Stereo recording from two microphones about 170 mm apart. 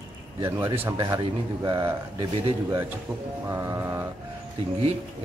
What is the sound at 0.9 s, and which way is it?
Speech, 20° right (ahead or behind).